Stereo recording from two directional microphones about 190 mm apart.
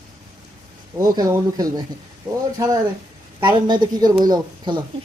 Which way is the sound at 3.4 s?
25° right (ahead or behind).